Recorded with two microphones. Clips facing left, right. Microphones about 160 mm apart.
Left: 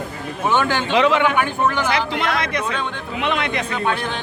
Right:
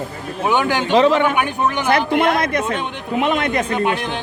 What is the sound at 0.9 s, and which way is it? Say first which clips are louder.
Speech: right 3 dB; 40° right (ahead or behind).